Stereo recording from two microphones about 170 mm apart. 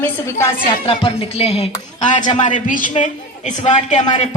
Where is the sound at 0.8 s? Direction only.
35° left (ahead or behind).